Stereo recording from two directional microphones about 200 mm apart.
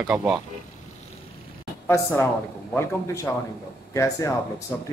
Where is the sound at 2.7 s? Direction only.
10° left (ahead or behind).